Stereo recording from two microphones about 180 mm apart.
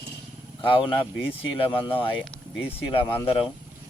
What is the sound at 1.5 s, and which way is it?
Speech, 30° left (ahead or behind).